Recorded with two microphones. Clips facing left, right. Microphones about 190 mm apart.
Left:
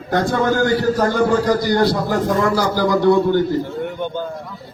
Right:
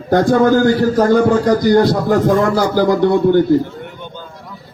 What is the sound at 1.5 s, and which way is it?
A man's voice, 50° right (ahead or behind).